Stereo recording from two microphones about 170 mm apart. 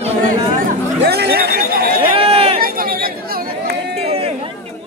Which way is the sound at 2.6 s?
60° right (ahead or behind).